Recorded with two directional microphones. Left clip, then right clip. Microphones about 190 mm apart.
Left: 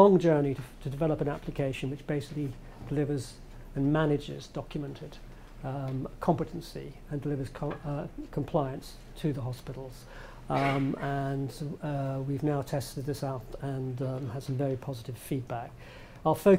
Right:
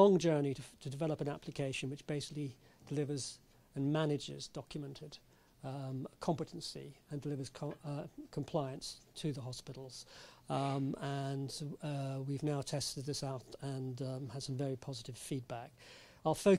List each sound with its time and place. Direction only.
0.0 s speech: 30° right (ahead or behind)